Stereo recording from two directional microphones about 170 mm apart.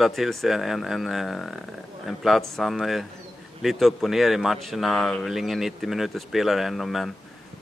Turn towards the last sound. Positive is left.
turn(degrees=0)  # may be behind; listen again after turning